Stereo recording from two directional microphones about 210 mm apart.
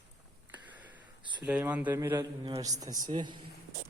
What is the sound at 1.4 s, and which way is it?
A man's voice, 5° right (ahead or behind).